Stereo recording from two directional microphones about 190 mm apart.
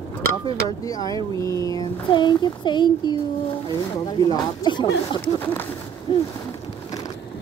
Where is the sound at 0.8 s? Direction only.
20° left (ahead or behind).